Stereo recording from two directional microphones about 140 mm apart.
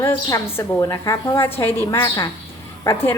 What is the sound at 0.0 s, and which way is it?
A woman's voice, 20° left (ahead or behind).